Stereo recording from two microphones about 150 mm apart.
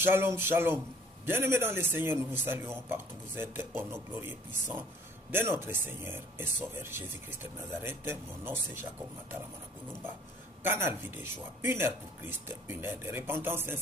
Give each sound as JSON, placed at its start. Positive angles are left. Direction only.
{"t": 0.0, "sound": "a man's voice", "side_deg": -15}
{"t": 10.6, "sound": "a man's voice", "side_deg": -15}